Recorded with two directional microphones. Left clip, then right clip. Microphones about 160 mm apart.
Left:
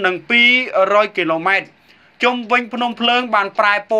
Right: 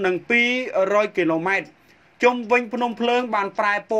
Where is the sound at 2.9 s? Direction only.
45° right (ahead or behind).